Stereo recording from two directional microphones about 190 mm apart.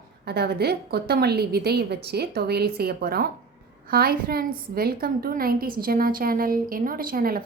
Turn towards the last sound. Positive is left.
turn(degrees=-50)  # may be behind; listen again after turning